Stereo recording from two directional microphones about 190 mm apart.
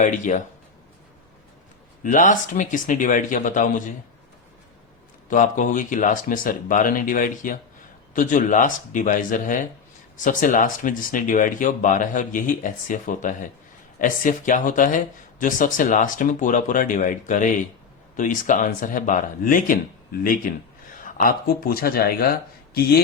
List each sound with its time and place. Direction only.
0.0 s speech: 40° left (ahead or behind)
2.0 s speech: 45° left (ahead or behind)
5.3 s speech: 40° left (ahead or behind)